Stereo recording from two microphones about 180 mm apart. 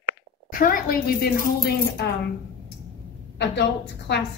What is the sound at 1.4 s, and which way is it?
Speech, 65° left (ahead or behind).